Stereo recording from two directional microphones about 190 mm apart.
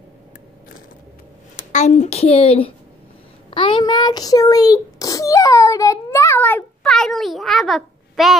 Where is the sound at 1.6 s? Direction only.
40° left (ahead or behind).